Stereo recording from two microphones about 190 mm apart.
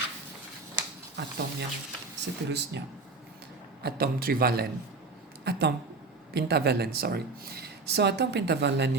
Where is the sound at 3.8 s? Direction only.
55° right (ahead or behind).